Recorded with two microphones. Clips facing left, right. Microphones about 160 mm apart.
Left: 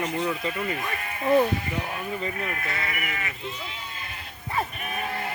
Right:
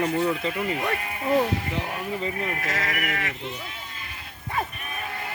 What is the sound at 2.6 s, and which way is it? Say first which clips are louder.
Speech: right 3 dB; 90° right.